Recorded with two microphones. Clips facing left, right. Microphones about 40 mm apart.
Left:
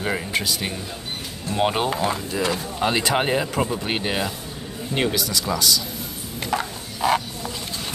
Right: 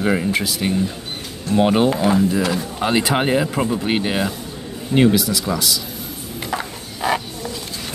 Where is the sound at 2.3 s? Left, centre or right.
Centre.